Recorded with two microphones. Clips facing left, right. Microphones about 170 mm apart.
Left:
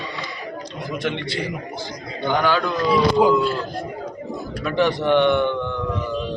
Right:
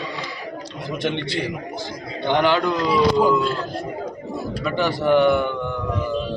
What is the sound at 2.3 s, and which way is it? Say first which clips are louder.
Speech: right 2 dB; 20° right (ahead or behind).